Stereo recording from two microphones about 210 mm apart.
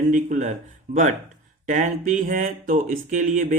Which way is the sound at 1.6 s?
35° right (ahead or behind).